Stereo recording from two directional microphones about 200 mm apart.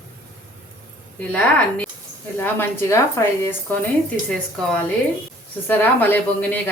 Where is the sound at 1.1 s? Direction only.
10° left (ahead or behind).